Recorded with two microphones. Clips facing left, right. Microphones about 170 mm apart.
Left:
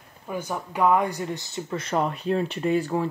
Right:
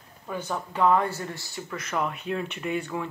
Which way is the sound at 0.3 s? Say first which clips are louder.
Left 1 dB; 10° left (ahead or behind).